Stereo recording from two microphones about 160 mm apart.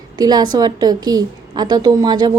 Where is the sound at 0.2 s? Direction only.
25° right (ahead or behind).